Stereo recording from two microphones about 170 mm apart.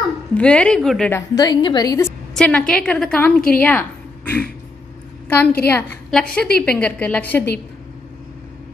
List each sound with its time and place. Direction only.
0.3 s a woman's voice: 5° left (ahead or behind)
1.1 s a woman's voice: 20° left (ahead or behind)
2.3 s a woman's voice: 5° left (ahead or behind)